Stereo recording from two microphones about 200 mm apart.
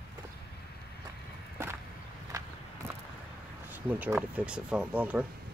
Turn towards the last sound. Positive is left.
turn(degrees=-5)  # may be behind; listen again after turning